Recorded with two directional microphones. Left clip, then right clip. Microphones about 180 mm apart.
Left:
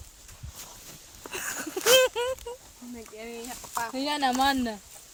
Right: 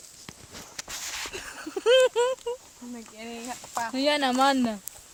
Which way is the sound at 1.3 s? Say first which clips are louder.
Left 2 dB; 35° right (ahead or behind).